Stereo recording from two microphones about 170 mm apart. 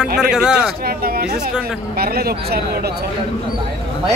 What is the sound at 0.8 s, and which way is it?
Speech, 65° right (ahead or behind).